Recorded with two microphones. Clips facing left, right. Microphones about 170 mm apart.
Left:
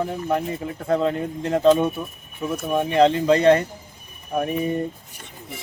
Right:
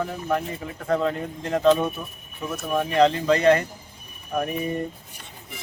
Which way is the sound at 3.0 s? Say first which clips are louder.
Left 2 dB; 30° left (ahead or behind).